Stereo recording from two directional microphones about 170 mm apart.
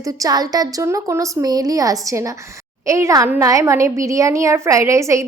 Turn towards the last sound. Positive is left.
turn(degrees=-15)  # may be behind; listen again after turning